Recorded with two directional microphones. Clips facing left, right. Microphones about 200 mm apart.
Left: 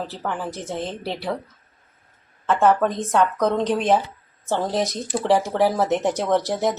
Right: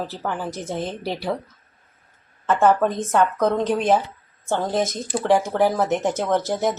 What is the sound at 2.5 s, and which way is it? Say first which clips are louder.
Speech: even; centre (ahead or behind).